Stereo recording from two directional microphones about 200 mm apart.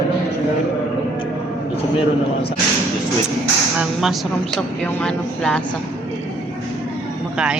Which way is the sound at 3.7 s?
Centre (ahead or behind).